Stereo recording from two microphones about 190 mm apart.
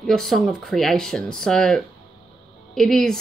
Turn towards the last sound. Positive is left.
turn(degrees=0)  # may be behind; listen again after turning